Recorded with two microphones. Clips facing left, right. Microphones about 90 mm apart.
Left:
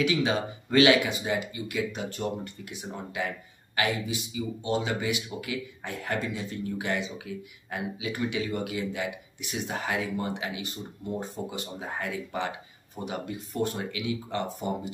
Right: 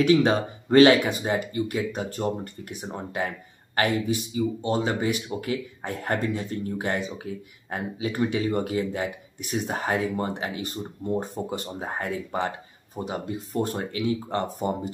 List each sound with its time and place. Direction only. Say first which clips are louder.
0.0 s speech: right 6 dB; 45° right (ahead or behind)